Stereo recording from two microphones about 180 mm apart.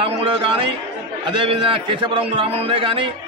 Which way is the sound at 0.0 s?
30° right (ahead or behind).